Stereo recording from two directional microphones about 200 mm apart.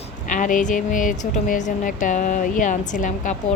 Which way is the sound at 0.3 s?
40° left (ahead or behind).